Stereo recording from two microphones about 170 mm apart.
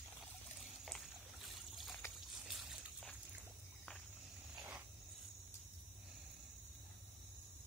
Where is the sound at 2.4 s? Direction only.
Centre (ahead or behind).